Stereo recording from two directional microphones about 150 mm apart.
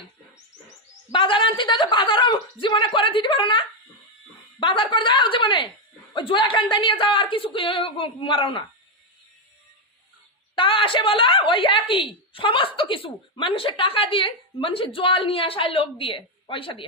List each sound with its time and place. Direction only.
1.1 s speech: 35° left (ahead or behind)
4.6 s a woman's voice: 35° left (ahead or behind)
10.6 s a woman's voice: 35° left (ahead or behind)